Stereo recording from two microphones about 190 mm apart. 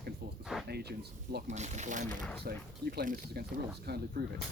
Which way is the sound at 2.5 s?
55° right (ahead or behind).